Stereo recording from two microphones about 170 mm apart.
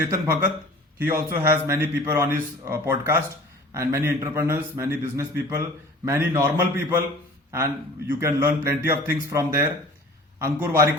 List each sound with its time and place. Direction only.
0.0 s a man's voice: 15° right (ahead or behind)